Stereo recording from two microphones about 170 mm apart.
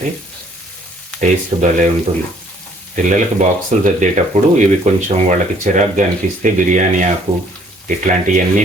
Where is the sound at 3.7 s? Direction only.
45° right (ahead or behind).